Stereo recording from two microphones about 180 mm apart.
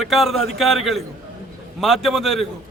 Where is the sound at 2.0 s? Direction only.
Centre (ahead or behind).